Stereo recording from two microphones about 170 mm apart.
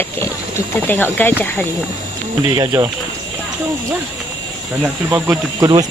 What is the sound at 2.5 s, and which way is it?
Speech, 20° right (ahead or behind).